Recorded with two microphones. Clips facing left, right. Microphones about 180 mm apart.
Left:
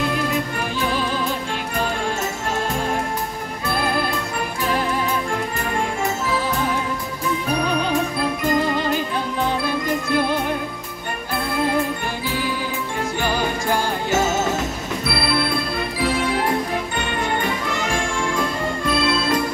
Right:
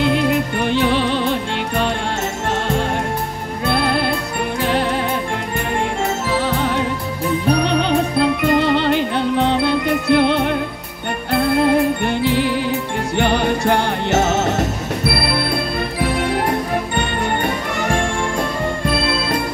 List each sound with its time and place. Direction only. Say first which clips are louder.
0.0 s music: right 6 dB; 75° right (ahead or behind)
3.6 s music: right 4 dB; 70° right (ahead or behind)
6.3 s music: right 4 dB; 70° right (ahead or behind)